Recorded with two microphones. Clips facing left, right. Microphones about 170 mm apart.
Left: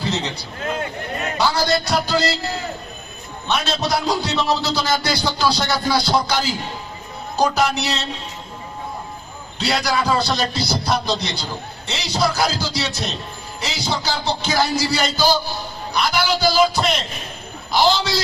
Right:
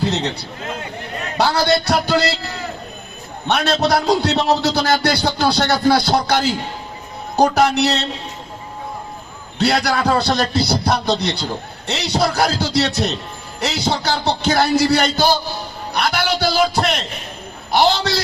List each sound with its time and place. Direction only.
1.4 s a man's voice: 65° right (ahead or behind)
3.4 s a man's voice: 65° right (ahead or behind)
9.6 s a man's voice: 60° right (ahead or behind)